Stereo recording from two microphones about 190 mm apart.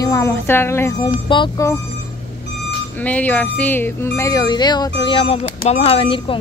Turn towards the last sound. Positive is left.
turn(degrees=25)  # may be behind; listen again after turning